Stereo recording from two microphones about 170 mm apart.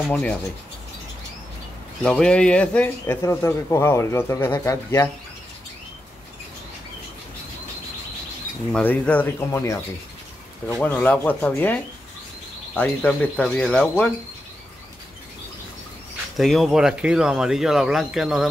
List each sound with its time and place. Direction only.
0.1 s a man's voice: 10° left (ahead or behind)
2.0 s a man's voice: 5° left (ahead or behind)
8.7 s a man's voice: 10° left (ahead or behind)
16.3 s speech: centre (ahead or behind)